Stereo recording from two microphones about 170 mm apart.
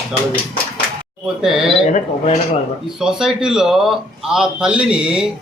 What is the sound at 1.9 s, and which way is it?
Speech, 45° left (ahead or behind).